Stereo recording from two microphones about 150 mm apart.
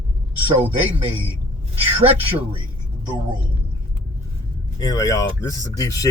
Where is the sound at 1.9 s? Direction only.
40° right (ahead or behind).